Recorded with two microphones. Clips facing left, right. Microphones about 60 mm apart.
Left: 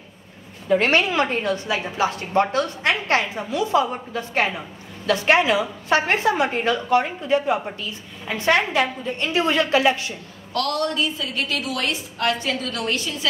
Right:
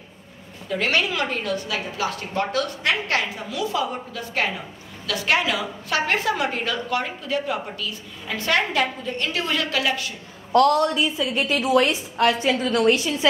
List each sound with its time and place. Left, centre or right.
0.7 s a woman's voice: left
10.5 s a woman's voice: right